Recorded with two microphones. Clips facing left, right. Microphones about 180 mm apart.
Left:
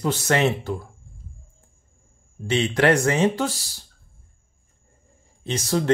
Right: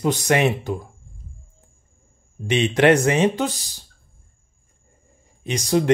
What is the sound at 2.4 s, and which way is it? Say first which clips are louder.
Speech: right 3 dB; 20° right (ahead or behind).